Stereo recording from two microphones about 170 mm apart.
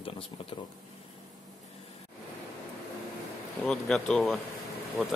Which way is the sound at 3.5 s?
Centre (ahead or behind).